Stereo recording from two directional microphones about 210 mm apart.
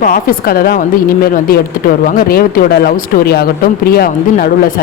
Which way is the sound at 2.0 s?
40° left (ahead or behind).